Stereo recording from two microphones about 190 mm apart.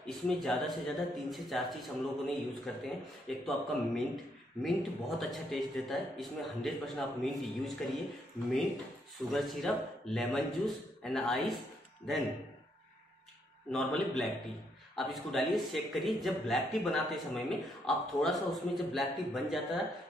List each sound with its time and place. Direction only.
0.0 s speech: centre (ahead or behind)
9.3 s speech: centre (ahead or behind)
13.7 s speech: centre (ahead or behind)